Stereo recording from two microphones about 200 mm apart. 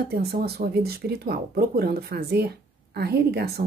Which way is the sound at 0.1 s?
55° right (ahead or behind).